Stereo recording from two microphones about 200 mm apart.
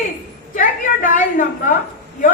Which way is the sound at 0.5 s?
40° left (ahead or behind).